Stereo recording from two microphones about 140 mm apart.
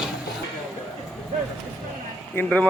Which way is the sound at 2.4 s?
5° left (ahead or behind).